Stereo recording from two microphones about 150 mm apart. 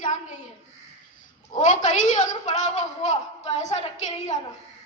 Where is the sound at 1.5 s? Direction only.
55° left (ahead or behind).